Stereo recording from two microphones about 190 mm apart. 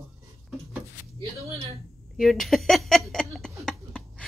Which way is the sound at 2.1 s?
Centre (ahead or behind).